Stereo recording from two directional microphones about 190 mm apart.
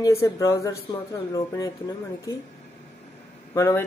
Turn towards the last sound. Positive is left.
turn(degrees=15)  # may be behind; listen again after turning